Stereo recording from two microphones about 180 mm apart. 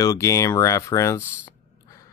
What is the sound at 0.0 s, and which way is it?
Speech, 20° left (ahead or behind).